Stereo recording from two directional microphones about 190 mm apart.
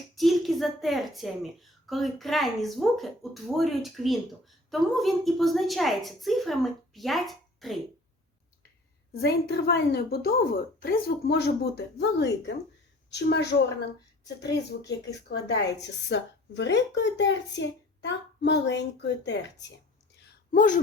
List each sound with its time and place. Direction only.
0.2 s a woman's voice: centre (ahead or behind)
9.2 s a woman's voice: 55° left (ahead or behind)
14.7 s a woman's voice: 60° left (ahead or behind)
20.2 s a sound: 45° left (ahead or behind)